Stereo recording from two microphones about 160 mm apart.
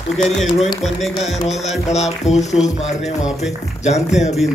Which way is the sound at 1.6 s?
45° left (ahead or behind).